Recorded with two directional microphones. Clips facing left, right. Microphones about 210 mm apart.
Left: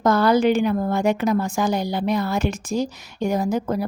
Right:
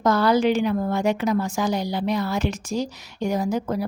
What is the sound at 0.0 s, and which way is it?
A woman's voice, 50° left (ahead or behind).